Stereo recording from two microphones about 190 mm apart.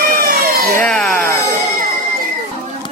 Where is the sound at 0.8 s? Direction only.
5° left (ahead or behind).